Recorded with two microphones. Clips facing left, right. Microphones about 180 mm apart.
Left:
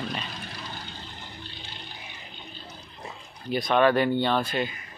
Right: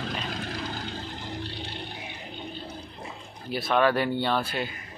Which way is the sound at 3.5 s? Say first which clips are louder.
Left 2 dB; 5° right (ahead or behind).